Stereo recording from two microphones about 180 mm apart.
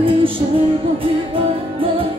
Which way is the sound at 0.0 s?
30° right (ahead or behind).